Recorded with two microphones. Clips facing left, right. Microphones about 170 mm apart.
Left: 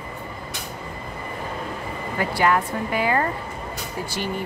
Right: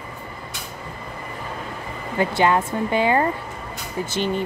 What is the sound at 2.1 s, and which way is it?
Speech, 25° right (ahead or behind).